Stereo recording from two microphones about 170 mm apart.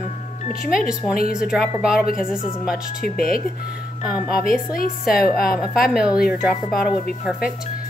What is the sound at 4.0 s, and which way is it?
Speech, 5° right (ahead or behind).